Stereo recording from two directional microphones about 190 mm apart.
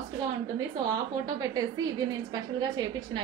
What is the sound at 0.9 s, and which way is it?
A woman's voice, 20° right (ahead or behind).